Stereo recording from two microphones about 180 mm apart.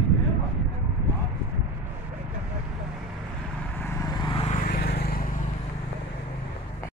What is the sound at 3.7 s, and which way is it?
Vehicle, 15° left (ahead or behind).